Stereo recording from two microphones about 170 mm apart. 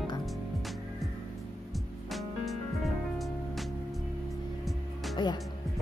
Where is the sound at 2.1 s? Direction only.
Centre (ahead or behind).